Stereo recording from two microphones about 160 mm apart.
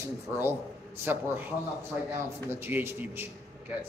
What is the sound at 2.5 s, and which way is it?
Speech, 15° right (ahead or behind).